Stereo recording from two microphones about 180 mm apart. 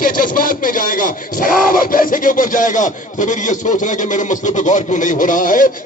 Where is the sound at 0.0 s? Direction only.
50° left (ahead or behind).